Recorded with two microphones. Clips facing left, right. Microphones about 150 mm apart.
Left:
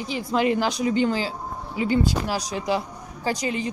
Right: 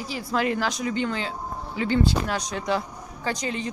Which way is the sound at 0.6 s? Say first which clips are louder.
Left 4 dB; 30° left (ahead or behind).